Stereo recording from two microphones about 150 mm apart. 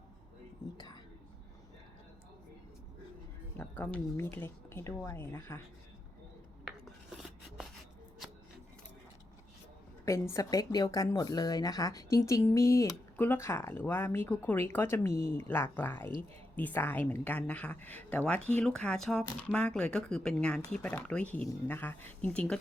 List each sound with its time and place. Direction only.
3.6 s speech: 10° left (ahead or behind)
6.7 s filing: 5° right (ahead or behind)
8.2 s a sound: 5° right (ahead or behind)
10.1 s speech: 20° left (ahead or behind)